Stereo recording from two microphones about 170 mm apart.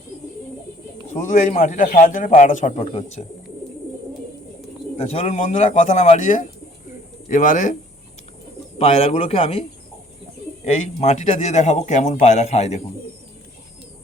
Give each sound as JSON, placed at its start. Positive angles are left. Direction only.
{"t": 1.2, "sound": "a man's voice", "side_deg": 50}
{"t": 2.8, "sound": "a man's voice", "side_deg": 35}
{"t": 4.9, "sound": "a man's voice", "side_deg": 40}
{"t": 8.8, "sound": "a man's voice", "side_deg": 35}